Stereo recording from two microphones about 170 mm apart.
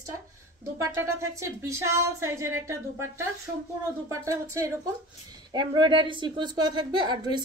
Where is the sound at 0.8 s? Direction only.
20° right (ahead or behind).